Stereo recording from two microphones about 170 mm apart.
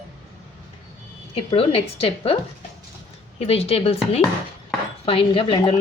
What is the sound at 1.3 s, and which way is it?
A woman's voice, 35° left (ahead or behind).